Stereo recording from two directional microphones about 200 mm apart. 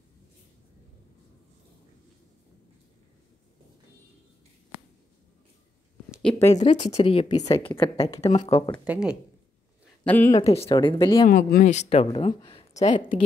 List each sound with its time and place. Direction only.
6.5 s speech: 35° left (ahead or behind)
8.8 s speech: 5° right (ahead or behind)
10.0 s speech: 10° left (ahead or behind)
10.4 s speech: 30° left (ahead or behind)
11.2 s speech: 45° left (ahead or behind)